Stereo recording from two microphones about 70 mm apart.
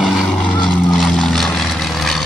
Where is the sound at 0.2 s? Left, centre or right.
Centre.